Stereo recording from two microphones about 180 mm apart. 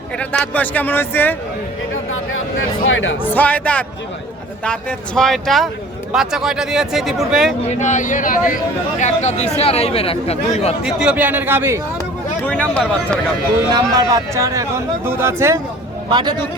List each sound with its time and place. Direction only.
0.2 s a man's voice: 10° left (ahead or behind)
2.3 s speech: 90° left
3.2 s a man's voice: 10° left (ahead or behind)
7.6 s speech: 40° left (ahead or behind)
10.8 s a man's voice: 5° right (ahead or behind)
12.5 s a man's voice: 5° left (ahead or behind)
13.7 s a man's voice: 20° right (ahead or behind)